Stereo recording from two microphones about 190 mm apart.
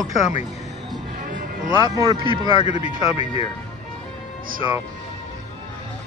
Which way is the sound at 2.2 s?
25° right (ahead or behind).